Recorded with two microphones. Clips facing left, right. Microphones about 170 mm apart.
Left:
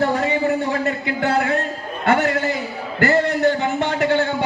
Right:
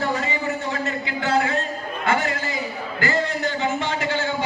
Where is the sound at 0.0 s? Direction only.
60° left (ahead or behind).